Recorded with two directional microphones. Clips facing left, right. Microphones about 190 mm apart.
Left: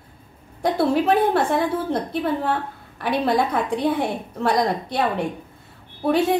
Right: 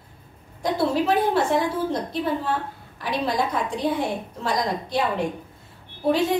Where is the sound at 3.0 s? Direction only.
60° left (ahead or behind).